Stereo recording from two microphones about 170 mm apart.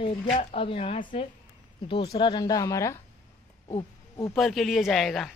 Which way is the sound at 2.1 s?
25° left (ahead or behind).